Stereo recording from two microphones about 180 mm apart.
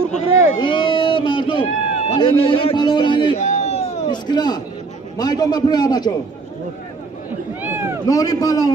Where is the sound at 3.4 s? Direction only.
40° left (ahead or behind).